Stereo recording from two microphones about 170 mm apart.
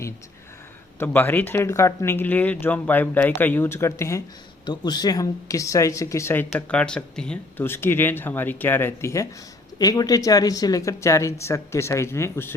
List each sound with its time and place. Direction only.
0.9 s speech: 10° left (ahead or behind)